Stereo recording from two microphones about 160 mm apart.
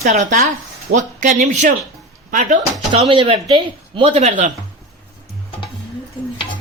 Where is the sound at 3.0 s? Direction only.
35° right (ahead or behind).